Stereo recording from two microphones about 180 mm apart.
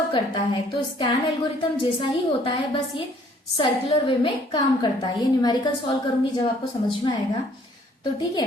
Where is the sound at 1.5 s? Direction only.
30° left (ahead or behind).